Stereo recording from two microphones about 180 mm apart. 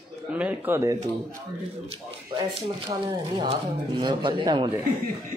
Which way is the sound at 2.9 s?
25° right (ahead or behind).